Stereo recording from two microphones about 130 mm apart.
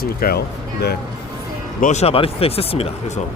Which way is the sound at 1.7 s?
80° left.